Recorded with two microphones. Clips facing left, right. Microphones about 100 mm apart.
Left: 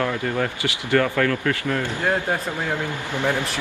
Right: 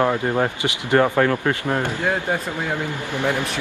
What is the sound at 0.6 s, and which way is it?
Speech, 25° right (ahead or behind).